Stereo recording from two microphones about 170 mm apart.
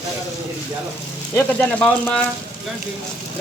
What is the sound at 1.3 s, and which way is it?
Speech, 10° left (ahead or behind).